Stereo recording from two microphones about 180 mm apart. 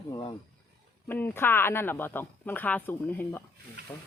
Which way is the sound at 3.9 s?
20° left (ahead or behind).